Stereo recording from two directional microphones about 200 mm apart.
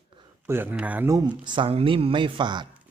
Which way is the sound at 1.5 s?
25° right (ahead or behind).